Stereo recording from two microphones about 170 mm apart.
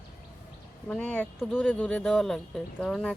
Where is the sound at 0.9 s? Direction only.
5° left (ahead or behind).